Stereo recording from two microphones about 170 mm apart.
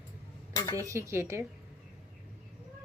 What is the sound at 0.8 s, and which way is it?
Speech, 20° right (ahead or behind).